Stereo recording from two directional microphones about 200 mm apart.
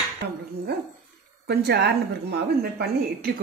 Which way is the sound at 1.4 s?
55° right (ahead or behind).